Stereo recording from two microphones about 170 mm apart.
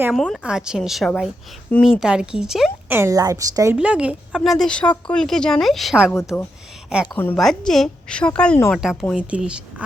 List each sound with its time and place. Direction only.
0.0 s a woman's voice: centre (ahead or behind)
2.9 s a woman's voice: 15° right (ahead or behind)
3.8 s a woman's voice: 5° right (ahead or behind)
7.0 s a woman's voice: 10° left (ahead or behind)
8.7 s a woman's voice: 5° right (ahead or behind)